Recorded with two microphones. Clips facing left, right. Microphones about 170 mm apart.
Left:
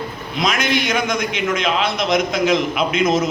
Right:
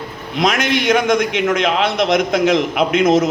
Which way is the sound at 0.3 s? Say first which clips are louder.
Right 3 dB; 70° right (ahead or behind).